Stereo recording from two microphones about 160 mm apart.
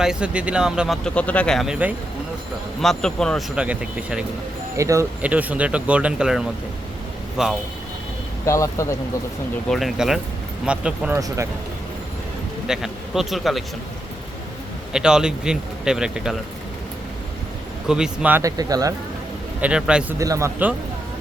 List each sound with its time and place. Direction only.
0.0 s speech: 5° right (ahead or behind)
4.8 s a man's voice: 20° right (ahead or behind); by 7.5 s centre (ahead or behind)
8.4 s speech: 20° left (ahead or behind)
9.6 s speech: centre (ahead or behind)
12.6 s speech: 5° right (ahead or behind)
14.9 s speech: 5° right (ahead or behind)
17.8 s a man's voice: 5° right (ahead or behind); by 18.9 s 20° right (ahead or behind)
19.6 s speech: 5° right (ahead or behind)
20.1 s a man's voice: 20° right (ahead or behind)